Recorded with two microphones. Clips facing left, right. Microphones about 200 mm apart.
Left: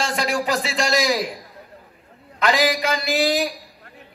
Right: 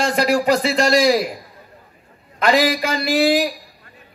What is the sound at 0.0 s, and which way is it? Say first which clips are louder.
A man's voice: right 6 dB; 40° right (ahead or behind).